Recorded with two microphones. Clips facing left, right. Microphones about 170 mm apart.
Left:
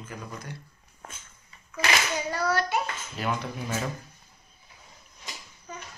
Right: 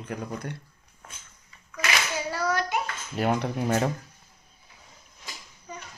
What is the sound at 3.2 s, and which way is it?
Speech, 55° right (ahead or behind).